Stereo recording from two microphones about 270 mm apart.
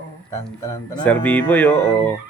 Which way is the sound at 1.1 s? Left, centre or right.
Centre.